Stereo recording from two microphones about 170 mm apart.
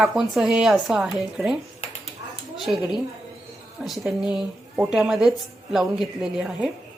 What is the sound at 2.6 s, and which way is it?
Speech, centre (ahead or behind).